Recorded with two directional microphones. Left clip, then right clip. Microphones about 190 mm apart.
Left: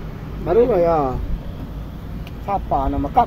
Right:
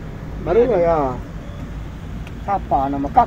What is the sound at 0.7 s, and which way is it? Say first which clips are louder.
Speech: even; 20° left (ahead or behind).